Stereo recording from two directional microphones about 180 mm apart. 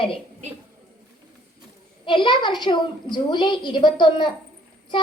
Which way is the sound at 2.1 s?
25° left (ahead or behind).